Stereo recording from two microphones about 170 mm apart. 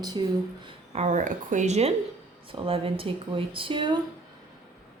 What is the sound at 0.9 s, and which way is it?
Speech, 45° right (ahead or behind).